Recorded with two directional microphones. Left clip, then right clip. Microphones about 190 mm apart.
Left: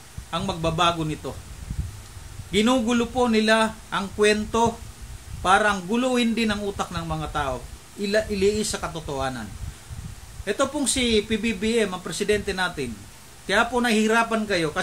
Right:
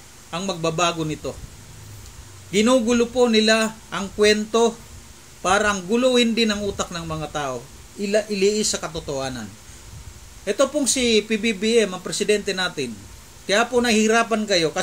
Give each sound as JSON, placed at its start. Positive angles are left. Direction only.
{"t": 0.3, "sound": "speech", "side_deg": -5}
{"t": 2.5, "sound": "speech", "side_deg": -5}
{"t": 10.4, "sound": "speech", "side_deg": -5}